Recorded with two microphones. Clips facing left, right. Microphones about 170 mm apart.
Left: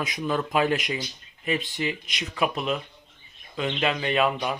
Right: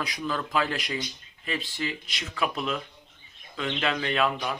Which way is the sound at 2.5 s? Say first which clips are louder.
Left 3 dB; centre (ahead or behind).